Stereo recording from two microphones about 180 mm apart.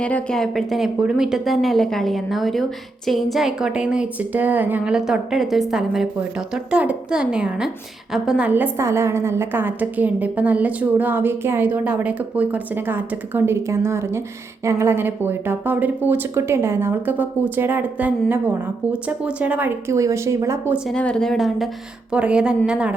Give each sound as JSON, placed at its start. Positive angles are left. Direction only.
{"t": 0.0, "sound": "a woman's voice", "side_deg": 5}
{"t": 20.7, "sound": "a woman's voice", "side_deg": 0}